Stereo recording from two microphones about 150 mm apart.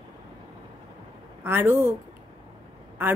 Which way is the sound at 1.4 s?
15° right (ahead or behind).